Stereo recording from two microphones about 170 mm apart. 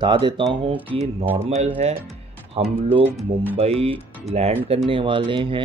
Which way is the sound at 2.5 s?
35° right (ahead or behind).